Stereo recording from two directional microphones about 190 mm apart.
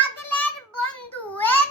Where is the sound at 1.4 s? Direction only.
10° left (ahead or behind).